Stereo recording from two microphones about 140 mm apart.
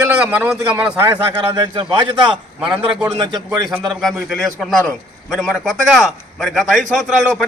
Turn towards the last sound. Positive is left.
turn(degrees=-5)  # may be behind; listen again after turning